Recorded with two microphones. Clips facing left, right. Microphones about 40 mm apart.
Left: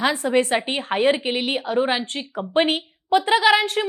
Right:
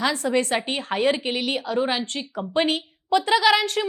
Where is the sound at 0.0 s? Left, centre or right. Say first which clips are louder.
Left 3 dB; left.